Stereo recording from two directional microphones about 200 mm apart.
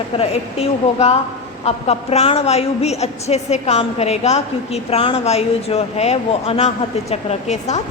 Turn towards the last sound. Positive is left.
turn(degrees=35)  # may be behind; listen again after turning